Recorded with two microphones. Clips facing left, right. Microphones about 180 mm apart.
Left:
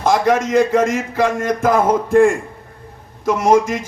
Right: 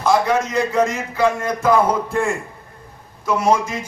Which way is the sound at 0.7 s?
50° left (ahead or behind).